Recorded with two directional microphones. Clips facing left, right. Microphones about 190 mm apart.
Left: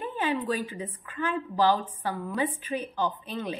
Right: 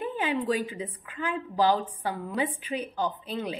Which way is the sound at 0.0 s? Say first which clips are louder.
Right 1 dB; 15° right (ahead or behind).